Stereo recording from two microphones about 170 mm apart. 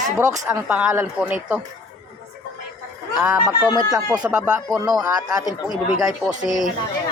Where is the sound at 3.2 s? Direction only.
15° right (ahead or behind).